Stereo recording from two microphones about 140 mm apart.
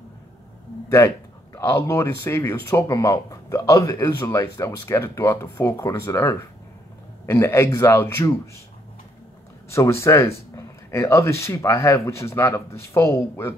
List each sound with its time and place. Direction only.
0.8 s speech: 20° left (ahead or behind)
9.7 s speech: 20° left (ahead or behind)